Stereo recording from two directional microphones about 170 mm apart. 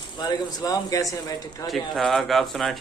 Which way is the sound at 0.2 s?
25° left (ahead or behind).